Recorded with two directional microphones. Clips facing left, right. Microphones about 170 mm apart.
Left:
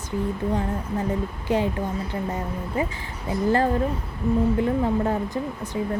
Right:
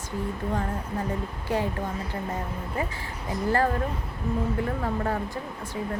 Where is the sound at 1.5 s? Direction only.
20° left (ahead or behind).